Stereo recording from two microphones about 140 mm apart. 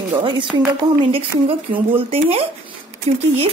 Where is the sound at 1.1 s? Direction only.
40° right (ahead or behind).